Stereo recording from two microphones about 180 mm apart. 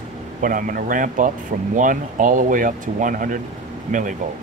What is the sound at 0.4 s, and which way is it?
Speech, 50° right (ahead or behind).